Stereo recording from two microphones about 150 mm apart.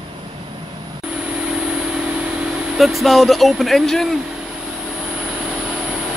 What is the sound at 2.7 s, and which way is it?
Speech, centre (ahead or behind).